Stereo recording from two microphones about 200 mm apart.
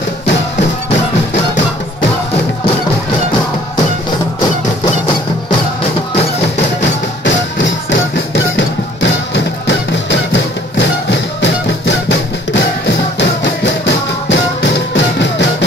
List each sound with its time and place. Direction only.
6.8 s music: 65° left (ahead or behind)